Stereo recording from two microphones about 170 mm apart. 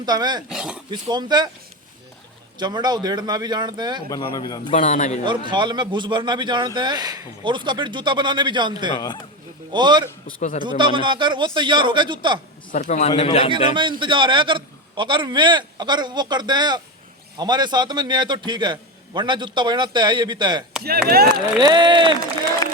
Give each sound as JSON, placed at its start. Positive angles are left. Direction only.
{"t": 0.0, "sound": "a man's voice", "side_deg": -25}
{"t": 0.4, "sound": "speech", "side_deg": -5}
{"t": 0.9, "sound": "a man's voice", "side_deg": -25}
{"t": 2.6, "sound": "a man's voice", "side_deg": -25}
{"t": 4.1, "sound": "a man's voice", "side_deg": 25}
{"t": 4.7, "sound": "a man's voice", "side_deg": 45}
{"t": 5.2, "sound": "a man's voice", "side_deg": -25}
{"t": 12.7, "sound": "a man's voice", "side_deg": 45}
{"t": 14.0, "sound": "a man's voice", "side_deg": -30}
{"t": 20.8, "sound": "speech", "side_deg": -65}
{"t": 21.3, "sound": "a man's voice", "side_deg": -25}